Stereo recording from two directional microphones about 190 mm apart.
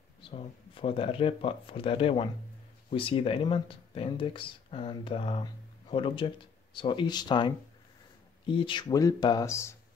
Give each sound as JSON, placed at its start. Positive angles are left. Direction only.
{"t": 0.2, "sound": "speech", "side_deg": 30}